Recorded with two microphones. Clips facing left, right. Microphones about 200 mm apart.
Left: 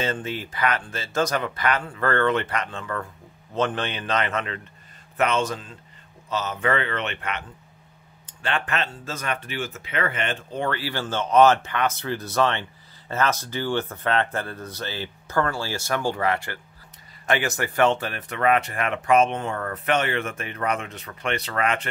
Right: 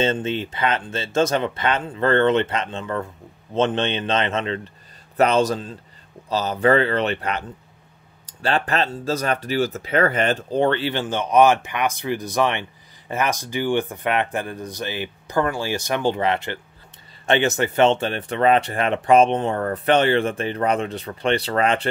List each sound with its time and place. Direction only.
0.0 s speech: 25° right (ahead or behind)
5.1 s speech: 35° right (ahead or behind)